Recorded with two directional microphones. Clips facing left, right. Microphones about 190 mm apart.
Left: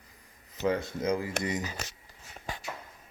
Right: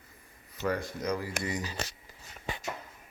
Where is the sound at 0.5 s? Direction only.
20° left (ahead or behind).